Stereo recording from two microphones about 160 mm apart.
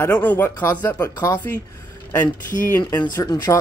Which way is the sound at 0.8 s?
25° left (ahead or behind).